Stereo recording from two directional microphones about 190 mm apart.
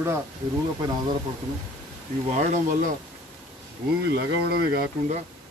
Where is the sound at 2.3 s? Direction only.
40° right (ahead or behind).